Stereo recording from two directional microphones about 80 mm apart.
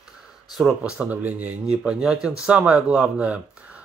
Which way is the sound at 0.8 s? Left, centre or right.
Centre.